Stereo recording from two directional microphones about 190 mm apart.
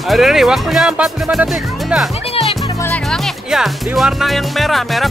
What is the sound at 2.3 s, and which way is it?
Music, 30° left (ahead or behind).